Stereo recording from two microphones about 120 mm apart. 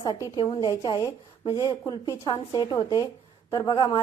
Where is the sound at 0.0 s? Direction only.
35° left (ahead or behind).